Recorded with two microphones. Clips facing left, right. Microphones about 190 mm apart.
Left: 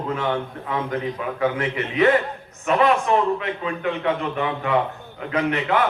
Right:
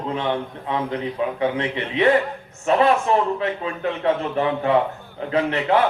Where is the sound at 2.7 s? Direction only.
35° right (ahead or behind).